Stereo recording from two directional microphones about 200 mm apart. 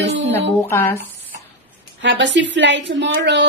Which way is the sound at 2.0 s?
65° right (ahead or behind).